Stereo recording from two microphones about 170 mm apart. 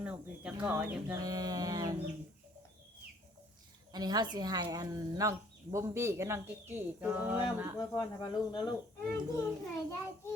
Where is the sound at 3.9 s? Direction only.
25° right (ahead or behind).